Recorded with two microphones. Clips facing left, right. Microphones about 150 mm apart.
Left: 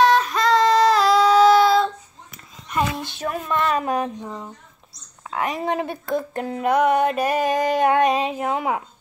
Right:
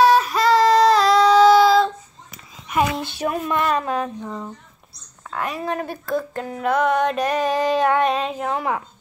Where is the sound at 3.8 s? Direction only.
15° left (ahead or behind).